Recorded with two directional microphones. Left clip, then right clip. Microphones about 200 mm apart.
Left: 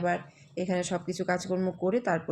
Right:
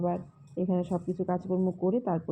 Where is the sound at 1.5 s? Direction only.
65° left (ahead or behind).